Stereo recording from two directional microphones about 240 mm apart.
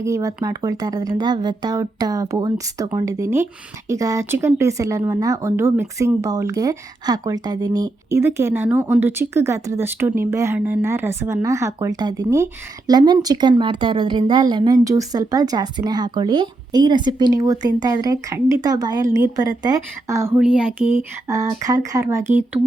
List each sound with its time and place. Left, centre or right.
0.0 s a woman's voice: centre